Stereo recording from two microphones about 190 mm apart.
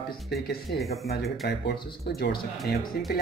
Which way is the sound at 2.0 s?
55° left (ahead or behind).